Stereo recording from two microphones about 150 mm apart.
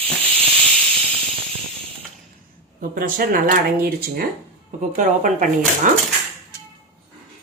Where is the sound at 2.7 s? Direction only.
70° right (ahead or behind); by 4.2 s 90° right.